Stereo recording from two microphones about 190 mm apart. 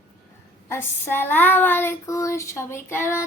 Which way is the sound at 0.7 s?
10° left (ahead or behind).